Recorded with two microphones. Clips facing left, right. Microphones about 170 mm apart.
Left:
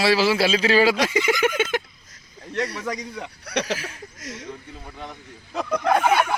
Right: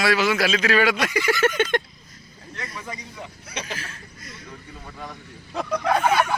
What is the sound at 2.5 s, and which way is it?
A man's voice, 75° left (ahead or behind).